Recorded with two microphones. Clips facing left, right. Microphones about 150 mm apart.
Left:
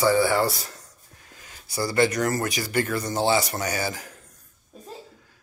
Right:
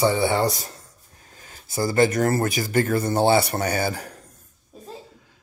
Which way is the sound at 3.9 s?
35° right (ahead or behind).